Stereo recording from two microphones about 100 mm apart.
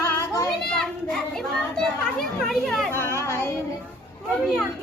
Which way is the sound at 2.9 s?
25° left (ahead or behind).